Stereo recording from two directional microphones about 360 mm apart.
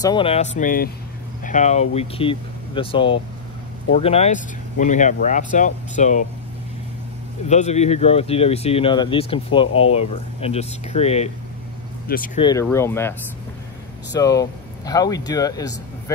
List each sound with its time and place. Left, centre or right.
0.0 s speech: centre
7.4 s speech: centre
9.7 s speech: left
9.9 s speech: centre
12.4 s speech: centre
14.1 s speech: centre